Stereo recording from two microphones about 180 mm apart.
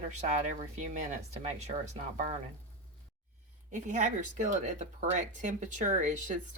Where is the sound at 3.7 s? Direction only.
45° right (ahead or behind).